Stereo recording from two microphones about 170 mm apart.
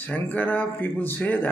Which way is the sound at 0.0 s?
10° left (ahead or behind).